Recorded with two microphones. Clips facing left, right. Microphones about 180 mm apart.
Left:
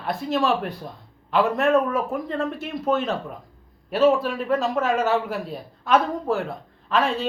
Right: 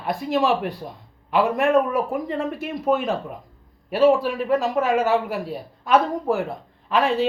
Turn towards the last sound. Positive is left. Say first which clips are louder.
# right 1 dB
turn(degrees=-15)  # may be behind; listen again after turning